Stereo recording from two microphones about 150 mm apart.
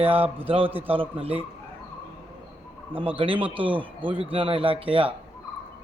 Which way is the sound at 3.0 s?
35° right (ahead or behind).